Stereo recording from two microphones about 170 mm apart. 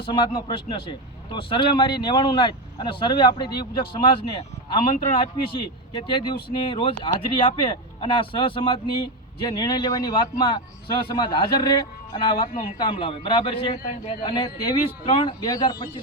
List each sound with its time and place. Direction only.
0.0 s speech: 30° left (ahead or behind)